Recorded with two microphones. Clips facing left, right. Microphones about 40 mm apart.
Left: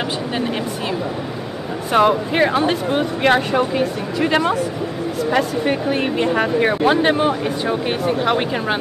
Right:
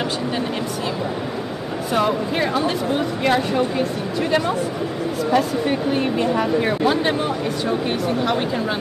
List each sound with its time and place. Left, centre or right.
1.9 s speech: left
5.3 s speech: left